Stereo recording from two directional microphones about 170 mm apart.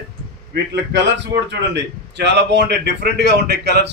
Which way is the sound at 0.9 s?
90° right.